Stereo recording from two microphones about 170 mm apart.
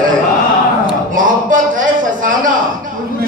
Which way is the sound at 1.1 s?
50° right (ahead or behind).